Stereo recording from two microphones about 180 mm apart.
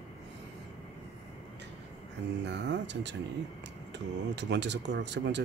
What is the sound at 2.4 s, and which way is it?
Speech, 75° right (ahead or behind).